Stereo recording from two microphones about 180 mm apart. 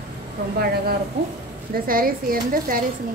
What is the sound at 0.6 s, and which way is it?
A woman's voice, 60° right (ahead or behind).